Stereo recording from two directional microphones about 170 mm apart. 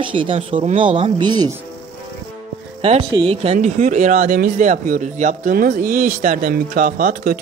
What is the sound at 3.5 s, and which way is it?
Speech, 45° right (ahead or behind).